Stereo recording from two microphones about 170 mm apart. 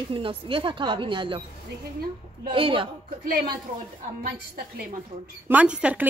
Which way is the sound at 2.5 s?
30° right (ahead or behind).